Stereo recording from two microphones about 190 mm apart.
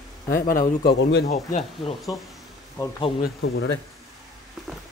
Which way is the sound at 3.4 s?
90° left.